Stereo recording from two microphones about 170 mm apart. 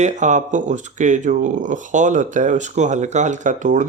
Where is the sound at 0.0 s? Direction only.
45° right (ahead or behind).